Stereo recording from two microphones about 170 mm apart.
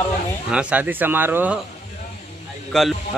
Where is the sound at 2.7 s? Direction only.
Centre (ahead or behind).